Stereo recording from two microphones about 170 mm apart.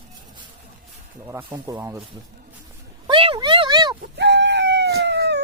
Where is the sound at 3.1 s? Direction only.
30° right (ahead or behind).